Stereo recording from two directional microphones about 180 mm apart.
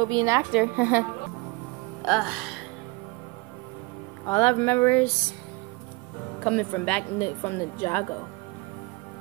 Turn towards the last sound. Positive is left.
turn(degrees=15)  # may be behind; listen again after turning